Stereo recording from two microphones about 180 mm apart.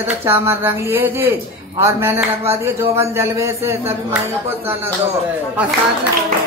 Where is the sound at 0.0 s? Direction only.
15° right (ahead or behind).